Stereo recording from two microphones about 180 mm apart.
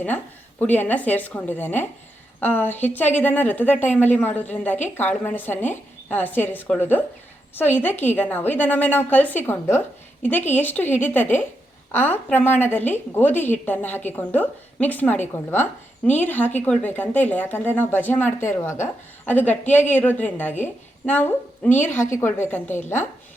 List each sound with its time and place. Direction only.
0.6 s a woman's voice: 10° left (ahead or behind)